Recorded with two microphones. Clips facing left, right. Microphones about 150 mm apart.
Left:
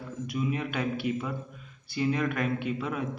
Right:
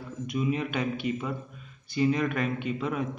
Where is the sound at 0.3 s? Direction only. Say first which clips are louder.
Right 2 dB; centre (ahead or behind).